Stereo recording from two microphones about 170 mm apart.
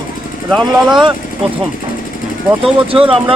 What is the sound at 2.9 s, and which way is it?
Speech, 30° right (ahead or behind).